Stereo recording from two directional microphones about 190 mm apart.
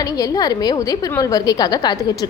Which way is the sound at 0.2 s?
20° left (ahead or behind).